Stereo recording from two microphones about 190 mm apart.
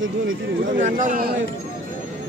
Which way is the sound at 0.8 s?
40° right (ahead or behind).